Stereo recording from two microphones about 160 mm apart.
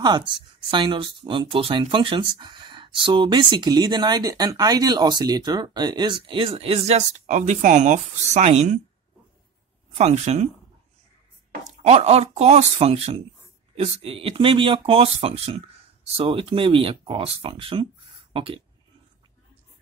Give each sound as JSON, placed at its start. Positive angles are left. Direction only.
{"t": 0.3, "sound": "speech", "side_deg": -30}
{"t": 9.9, "sound": "speech", "side_deg": -45}
{"t": 11.6, "sound": "speech", "side_deg": -45}